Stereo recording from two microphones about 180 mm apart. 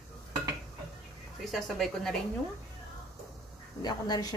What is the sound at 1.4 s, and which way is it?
Speech, centre (ahead or behind).